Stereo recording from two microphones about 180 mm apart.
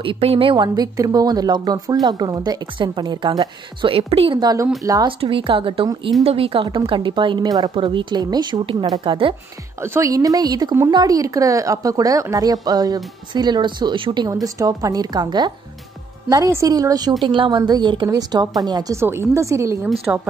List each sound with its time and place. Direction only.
0.0 s speech: 30° right (ahead or behind)
9.8 s a woman's voice: 15° right (ahead or behind)